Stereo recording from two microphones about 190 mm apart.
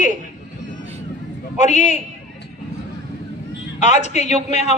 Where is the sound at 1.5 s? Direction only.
40° left (ahead or behind).